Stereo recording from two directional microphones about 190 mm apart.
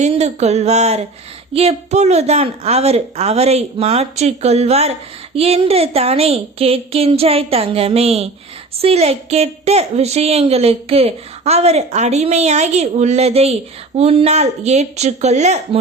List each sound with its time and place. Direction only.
0.0 s a woman's voice: 35° right (ahead or behind)